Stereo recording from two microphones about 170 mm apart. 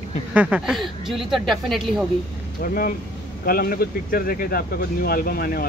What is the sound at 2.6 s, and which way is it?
Speech, 60° left (ahead or behind).